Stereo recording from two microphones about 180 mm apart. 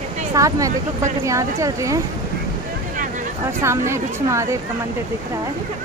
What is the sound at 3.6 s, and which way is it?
Speech, 15° right (ahead or behind).